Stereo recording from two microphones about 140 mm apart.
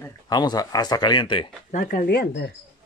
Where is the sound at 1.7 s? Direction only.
60° left (ahead or behind).